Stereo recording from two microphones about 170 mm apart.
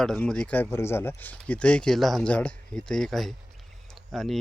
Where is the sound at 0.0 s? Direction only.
5° left (ahead or behind).